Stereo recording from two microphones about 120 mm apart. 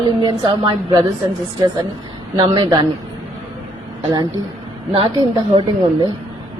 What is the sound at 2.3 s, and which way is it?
Speech, 40° right (ahead or behind).